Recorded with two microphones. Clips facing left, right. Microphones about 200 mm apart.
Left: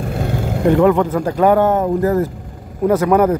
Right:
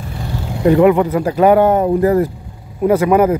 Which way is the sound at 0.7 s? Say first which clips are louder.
Right 3 dB; 10° right (ahead or behind).